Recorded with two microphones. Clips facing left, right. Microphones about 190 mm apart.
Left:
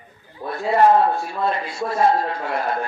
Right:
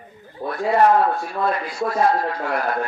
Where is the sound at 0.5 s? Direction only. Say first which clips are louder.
Left 1 dB; 25° left (ahead or behind).